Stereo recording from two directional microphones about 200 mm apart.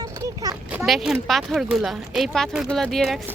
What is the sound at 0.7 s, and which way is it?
Speech, centre (ahead or behind).